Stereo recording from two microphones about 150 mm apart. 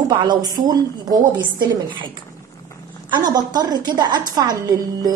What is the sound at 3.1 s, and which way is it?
A woman's voice, 25° right (ahead or behind).